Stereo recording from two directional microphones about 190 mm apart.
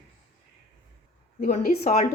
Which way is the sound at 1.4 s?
40° left (ahead or behind).